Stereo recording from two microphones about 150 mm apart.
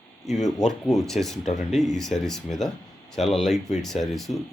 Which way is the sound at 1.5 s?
50° left (ahead or behind).